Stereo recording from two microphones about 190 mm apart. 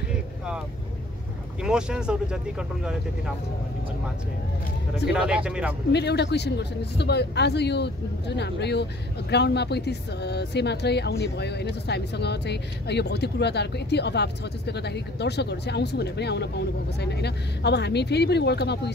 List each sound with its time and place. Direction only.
1.6 s speech: 5° right (ahead or behind)
5.0 s speech: 5° right (ahead or behind)
5.9 s speech: 60° left (ahead or behind)